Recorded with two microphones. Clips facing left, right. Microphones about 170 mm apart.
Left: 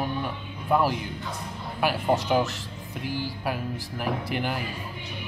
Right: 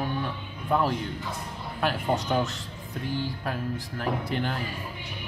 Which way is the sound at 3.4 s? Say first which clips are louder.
Left 1 dB; 10° left (ahead or behind).